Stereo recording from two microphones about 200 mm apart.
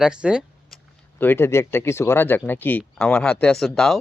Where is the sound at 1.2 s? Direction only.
10° left (ahead or behind).